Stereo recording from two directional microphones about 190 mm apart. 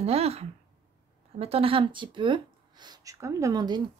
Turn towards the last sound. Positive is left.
turn(degrees=-20)  # may be behind; listen again after turning